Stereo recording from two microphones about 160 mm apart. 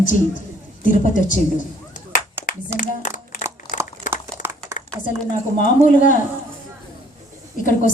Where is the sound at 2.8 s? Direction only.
55° left (ahead or behind).